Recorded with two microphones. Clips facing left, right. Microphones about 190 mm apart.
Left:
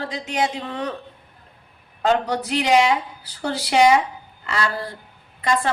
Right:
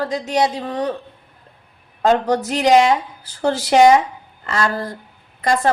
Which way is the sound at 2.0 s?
45° right (ahead or behind).